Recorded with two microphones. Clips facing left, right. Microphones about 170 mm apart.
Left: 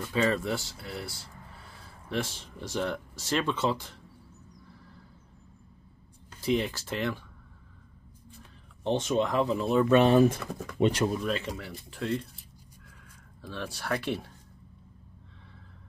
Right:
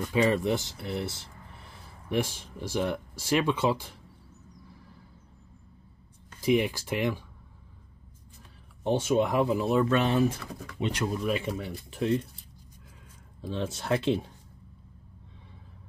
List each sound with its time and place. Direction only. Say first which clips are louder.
0.0 s speech: right 3 dB; 15° right (ahead or behind)
6.4 s speech: right 3 dB; 15° right (ahead or behind)
8.8 s speech: right 2 dB; 10° right (ahead or behind)
9.9 s speech: left 5 dB; 35° left (ahead or behind)
10.8 s speech: left 6 dB; 50° left (ahead or behind)
11.2 s speech: right 2 dB; 10° right (ahead or behind)
11.5 s speech: right 5 dB; 20° right (ahead or behind)
13.5 s speech: right 4 dB; 20° right (ahead or behind)